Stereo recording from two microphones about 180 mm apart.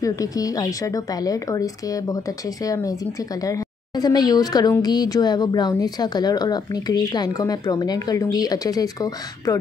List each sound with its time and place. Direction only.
0.0 s speech: 20° left (ahead or behind)